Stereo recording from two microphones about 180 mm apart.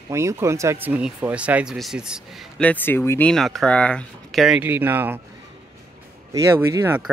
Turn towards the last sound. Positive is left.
turn(degrees=-10)  # may be behind; listen again after turning